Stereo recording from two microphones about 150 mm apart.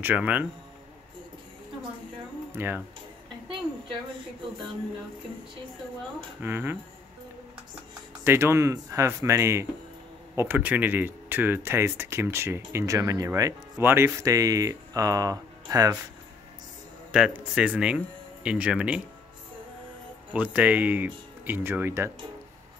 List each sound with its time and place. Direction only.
0.0 s speech: 10° right (ahead or behind)
2.5 s speech: 15° right (ahead or behind)
6.4 s speech: 15° right (ahead or behind)
8.2 s speech: 15° right (ahead or behind)
17.1 s speech: 5° right (ahead or behind)
20.3 s speech: 10° right (ahead or behind)